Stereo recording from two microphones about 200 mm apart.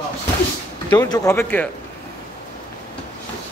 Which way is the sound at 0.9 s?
20° left (ahead or behind).